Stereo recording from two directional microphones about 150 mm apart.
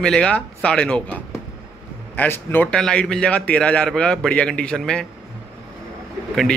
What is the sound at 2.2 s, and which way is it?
A man's voice, 10° left (ahead or behind).